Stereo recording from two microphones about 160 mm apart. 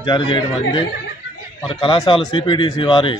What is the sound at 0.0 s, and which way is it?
A man's voice, 30° left (ahead or behind).